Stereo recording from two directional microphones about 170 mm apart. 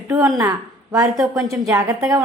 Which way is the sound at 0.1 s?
20° right (ahead or behind).